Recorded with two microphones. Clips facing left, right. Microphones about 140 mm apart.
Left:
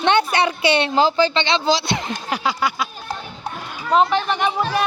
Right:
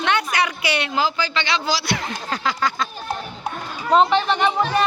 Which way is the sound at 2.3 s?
10° left (ahead or behind).